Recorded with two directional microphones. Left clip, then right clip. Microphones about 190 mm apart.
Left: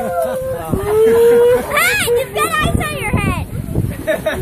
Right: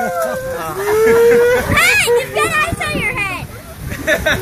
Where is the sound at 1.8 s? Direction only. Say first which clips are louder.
Right 2 dB; 30° left (ahead or behind).